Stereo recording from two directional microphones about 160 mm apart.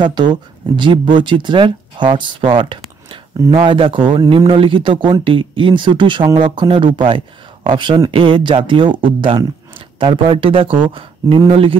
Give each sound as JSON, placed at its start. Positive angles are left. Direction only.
{"t": 0.0, "sound": "speech", "side_deg": -30}